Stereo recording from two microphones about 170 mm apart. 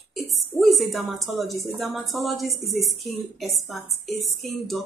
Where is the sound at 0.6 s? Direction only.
Centre (ahead or behind).